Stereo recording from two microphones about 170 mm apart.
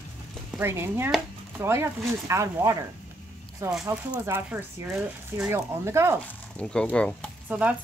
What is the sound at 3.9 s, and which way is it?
A woman's voice, 15° right (ahead or behind).